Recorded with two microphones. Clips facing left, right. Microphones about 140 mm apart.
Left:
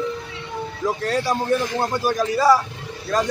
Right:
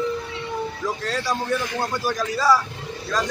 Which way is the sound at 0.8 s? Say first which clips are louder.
Left 6 dB; 15° left (ahead or behind).